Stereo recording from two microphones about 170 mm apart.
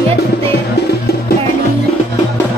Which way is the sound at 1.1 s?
70° left (ahead or behind).